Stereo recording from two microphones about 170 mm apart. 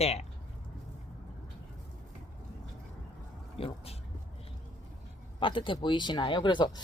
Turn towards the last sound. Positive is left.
turn(degrees=25)  # may be behind; listen again after turning